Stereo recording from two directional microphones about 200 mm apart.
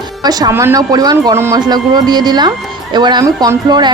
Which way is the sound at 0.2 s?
20° right (ahead or behind).